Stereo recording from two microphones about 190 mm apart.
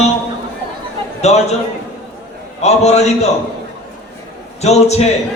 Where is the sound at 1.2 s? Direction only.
35° left (ahead or behind).